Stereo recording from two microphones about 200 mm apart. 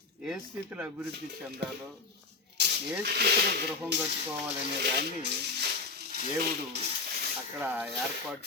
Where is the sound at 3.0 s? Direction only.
55° right (ahead or behind).